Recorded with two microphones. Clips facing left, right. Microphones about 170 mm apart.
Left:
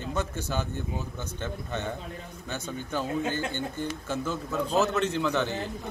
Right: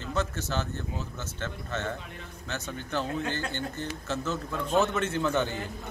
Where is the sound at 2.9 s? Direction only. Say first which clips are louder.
Left 2 dB; 15° left (ahead or behind).